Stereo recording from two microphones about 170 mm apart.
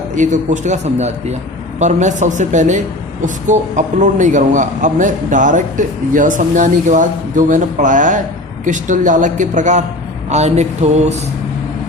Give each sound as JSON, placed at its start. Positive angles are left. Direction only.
{"t": 0.2, "sound": "a man's voice", "side_deg": -45}